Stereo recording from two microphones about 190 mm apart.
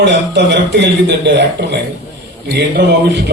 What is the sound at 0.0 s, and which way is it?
A man's voice, 65° right (ahead or behind).